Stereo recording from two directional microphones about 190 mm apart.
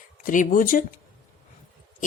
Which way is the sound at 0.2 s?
45° left (ahead or behind).